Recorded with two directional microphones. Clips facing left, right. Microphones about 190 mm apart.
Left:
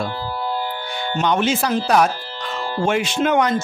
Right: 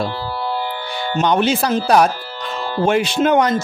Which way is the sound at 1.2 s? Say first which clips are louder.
Right 3 dB; 35° right (ahead or behind).